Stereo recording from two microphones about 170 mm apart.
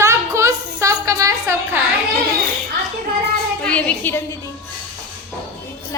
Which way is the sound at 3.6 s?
5° left (ahead or behind).